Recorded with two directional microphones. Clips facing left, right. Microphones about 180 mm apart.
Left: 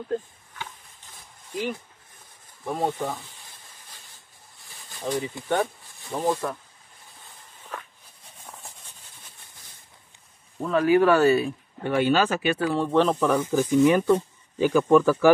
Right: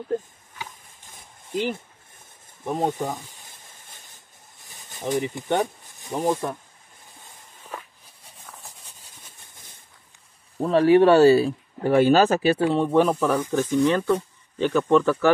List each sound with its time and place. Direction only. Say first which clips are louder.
0.1 s a sound: right 2 dB; 15° right (ahead or behind)
1.5 s speech: right 3 dB; 25° right (ahead or behind)
2.6 s snake: right 2 dB; 20° right (ahead or behind)
4.6 s speech: right 2 dB; 20° right (ahead or behind)
10.6 s speech: right 4 dB; 35° right (ahead or behind); by 13.5 s 10° right (ahead or behind)
13.5 s speech: left 4 dB; 5° left (ahead or behind)